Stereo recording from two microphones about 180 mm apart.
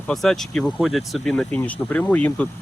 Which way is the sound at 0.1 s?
Centre (ahead or behind).